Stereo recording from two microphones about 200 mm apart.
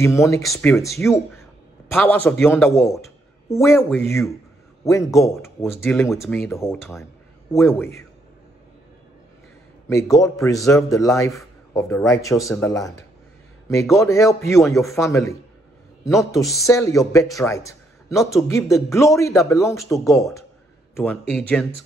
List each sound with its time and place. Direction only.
0.0 s a man's voice: 15° left (ahead or behind)
1.9 s a man's voice: 10° left (ahead or behind)
6.2 s speech: centre (ahead or behind)
6.6 s a man's voice: 10° left (ahead or behind)
9.8 s a man's voice: 15° left (ahead or behind)